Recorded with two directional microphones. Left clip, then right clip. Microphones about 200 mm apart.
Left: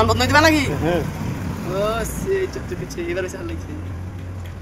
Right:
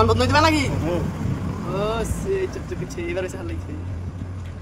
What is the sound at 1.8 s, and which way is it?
Speech, 25° right (ahead or behind).